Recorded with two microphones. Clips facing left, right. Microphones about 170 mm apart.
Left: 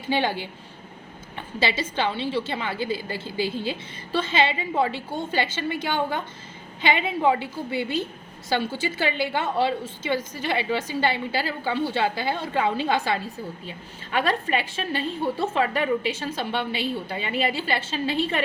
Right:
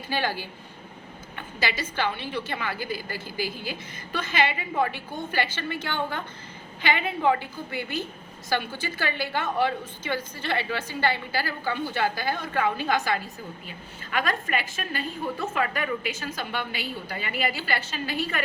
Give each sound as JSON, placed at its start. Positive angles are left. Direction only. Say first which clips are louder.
{"t": 0.1, "sound": "a woman's voice", "louder": "left 4 dB", "side_deg": 20}
{"t": 1.5, "sound": "a woman's voice", "louder": "left 4 dB", "side_deg": 25}